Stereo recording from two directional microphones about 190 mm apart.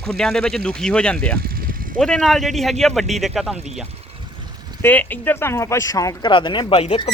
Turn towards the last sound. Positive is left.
turn(degrees=30)  # may be behind; listen again after turning